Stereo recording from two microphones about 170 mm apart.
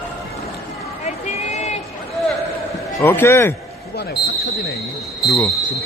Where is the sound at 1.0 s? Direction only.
40° left (ahead or behind).